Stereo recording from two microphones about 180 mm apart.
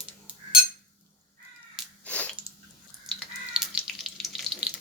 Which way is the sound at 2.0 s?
10° left (ahead or behind).